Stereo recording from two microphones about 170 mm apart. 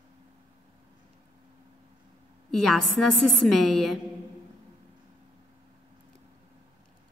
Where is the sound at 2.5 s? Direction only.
Centre (ahead or behind).